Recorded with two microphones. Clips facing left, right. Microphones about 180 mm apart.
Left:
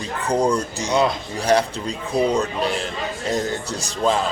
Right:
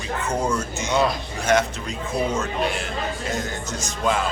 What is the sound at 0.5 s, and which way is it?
Speech, 35° left (ahead or behind).